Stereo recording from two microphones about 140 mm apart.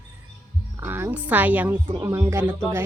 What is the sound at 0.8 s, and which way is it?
A woman's voice, 15° right (ahead or behind).